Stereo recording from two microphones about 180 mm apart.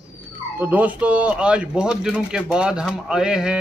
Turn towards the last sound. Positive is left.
turn(degrees=-5)  # may be behind; listen again after turning